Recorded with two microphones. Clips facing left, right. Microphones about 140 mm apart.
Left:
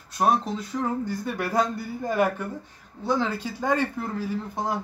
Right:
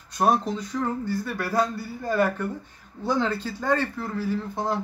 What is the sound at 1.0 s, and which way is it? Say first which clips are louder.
Speech: even; 20° left (ahead or behind).